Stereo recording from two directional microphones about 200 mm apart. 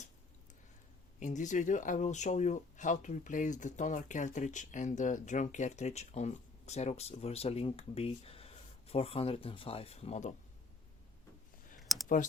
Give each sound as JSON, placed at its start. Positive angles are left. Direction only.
{"t": 1.2, "sound": "speech", "side_deg": 40}
{"t": 11.8, "sound": "clicking", "side_deg": 0}